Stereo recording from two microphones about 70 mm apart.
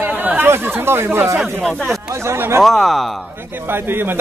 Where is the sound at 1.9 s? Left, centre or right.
Right.